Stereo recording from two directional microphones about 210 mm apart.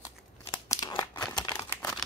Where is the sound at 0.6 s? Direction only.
20° left (ahead or behind).